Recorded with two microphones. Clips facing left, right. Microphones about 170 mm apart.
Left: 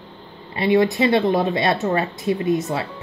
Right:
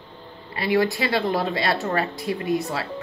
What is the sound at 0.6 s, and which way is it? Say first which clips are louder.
Speech: left 5 dB; 20° left (ahead or behind).